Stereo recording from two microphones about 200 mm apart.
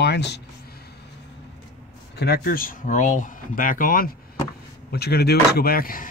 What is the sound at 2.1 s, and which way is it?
Speech, 55° left (ahead or behind).